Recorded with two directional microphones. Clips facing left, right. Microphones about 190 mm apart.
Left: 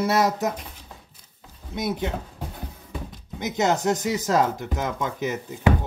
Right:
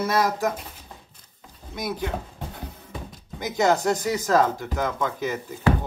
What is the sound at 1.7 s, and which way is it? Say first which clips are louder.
Speech: left 2 dB; 25° left (ahead or behind).